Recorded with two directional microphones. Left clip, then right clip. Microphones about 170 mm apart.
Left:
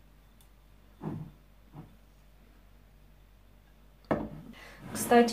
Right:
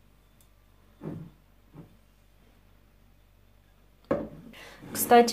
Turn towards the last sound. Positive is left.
turn(degrees=-50)  # may be behind; listen again after turning